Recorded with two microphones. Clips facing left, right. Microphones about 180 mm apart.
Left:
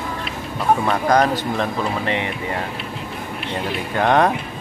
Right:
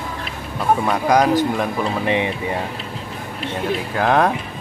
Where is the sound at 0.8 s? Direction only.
10° right (ahead or behind).